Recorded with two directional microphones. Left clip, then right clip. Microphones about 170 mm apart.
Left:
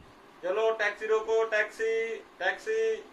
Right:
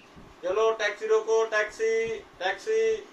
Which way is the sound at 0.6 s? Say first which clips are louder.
Right 2 dB; 5° right (ahead or behind).